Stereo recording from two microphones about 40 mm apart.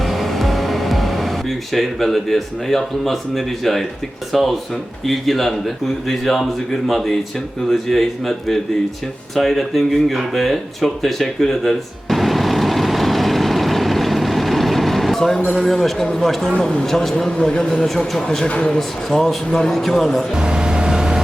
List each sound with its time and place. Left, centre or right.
0.0 s music: centre
4.3 s a man's voice: centre
9.3 s a sound: centre
15.4 s speech: centre
17.3 s speech: left
17.6 s speech: centre
18.4 s speech: left
18.8 s a man's voice: centre
20.3 s vehicle: right